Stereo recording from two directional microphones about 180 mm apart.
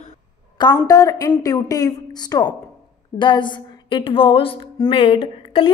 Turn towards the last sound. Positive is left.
turn(degrees=30)  # may be behind; listen again after turning